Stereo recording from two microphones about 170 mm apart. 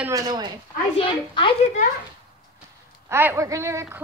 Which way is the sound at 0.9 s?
30° left (ahead or behind).